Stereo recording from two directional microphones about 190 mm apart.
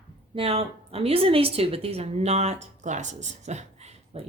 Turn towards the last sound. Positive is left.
turn(degrees=-35)  # may be behind; listen again after turning